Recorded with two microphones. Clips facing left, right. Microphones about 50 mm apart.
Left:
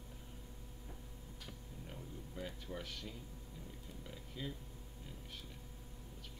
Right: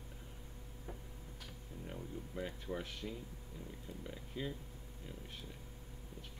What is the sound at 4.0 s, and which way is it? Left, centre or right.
Speech, centre.